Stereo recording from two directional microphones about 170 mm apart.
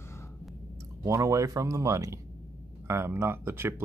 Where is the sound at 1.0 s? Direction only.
20° right (ahead or behind).